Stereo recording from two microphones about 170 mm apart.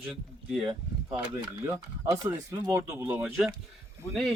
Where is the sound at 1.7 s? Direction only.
15° right (ahead or behind).